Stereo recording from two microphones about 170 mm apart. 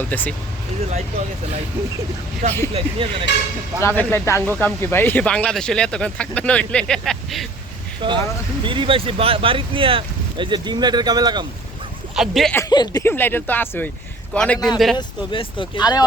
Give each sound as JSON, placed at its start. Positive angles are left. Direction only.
{"t": 0.0, "sound": "speech", "side_deg": 10}
{"t": 2.4, "sound": "speech", "side_deg": -40}
{"t": 3.8, "sound": "speech", "side_deg": 15}
{"t": 8.0, "sound": "speech", "side_deg": -30}
{"t": 12.1, "sound": "speech", "side_deg": 0}
{"t": 12.5, "sound": "speech", "side_deg": 25}
{"t": 14.9, "sound": "speech", "side_deg": 30}